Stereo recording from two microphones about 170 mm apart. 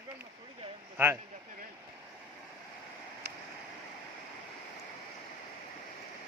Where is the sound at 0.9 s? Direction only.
15° right (ahead or behind).